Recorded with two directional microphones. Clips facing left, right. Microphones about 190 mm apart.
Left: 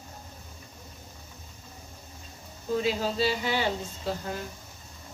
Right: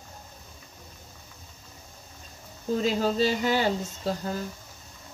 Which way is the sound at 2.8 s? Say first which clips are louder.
Right 4 dB; 45° right (ahead or behind).